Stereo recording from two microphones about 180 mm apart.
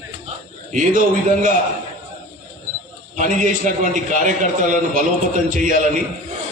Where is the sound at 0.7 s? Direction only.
45° right (ahead or behind).